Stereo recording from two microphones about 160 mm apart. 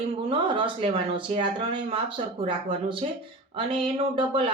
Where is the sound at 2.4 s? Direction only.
35° right (ahead or behind).